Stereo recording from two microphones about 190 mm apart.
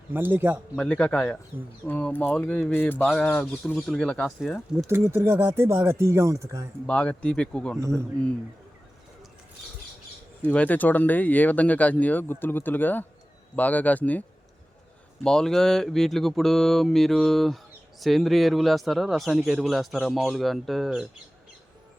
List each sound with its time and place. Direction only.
0.1 s speech: 10° right (ahead or behind)
0.8 s a man's voice: 5° left (ahead or behind)
4.9 s speech: 15° right (ahead or behind)
6.8 s a man's voice: 5° left (ahead or behind)
7.8 s speech: 15° right (ahead or behind)
10.4 s a man's voice: 5° left (ahead or behind)